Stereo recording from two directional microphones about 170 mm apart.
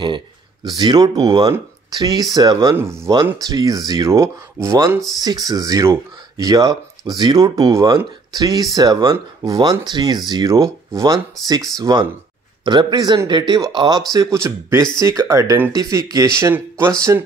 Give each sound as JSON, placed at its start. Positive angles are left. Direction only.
{"t": 0.7, "sound": "speech", "side_deg": -25}
{"t": 2.7, "sound": "speech", "side_deg": -15}